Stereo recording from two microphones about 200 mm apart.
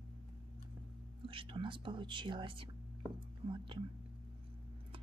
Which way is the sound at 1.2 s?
25° right (ahead or behind).